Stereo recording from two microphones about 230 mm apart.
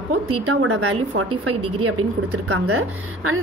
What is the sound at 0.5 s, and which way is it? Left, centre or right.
A woman's voice, right.